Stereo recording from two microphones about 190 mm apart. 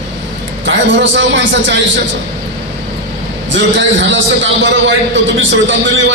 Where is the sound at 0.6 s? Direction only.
70° right (ahead or behind).